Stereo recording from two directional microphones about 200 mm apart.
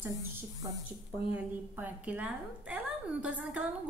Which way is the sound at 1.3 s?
10° right (ahead or behind).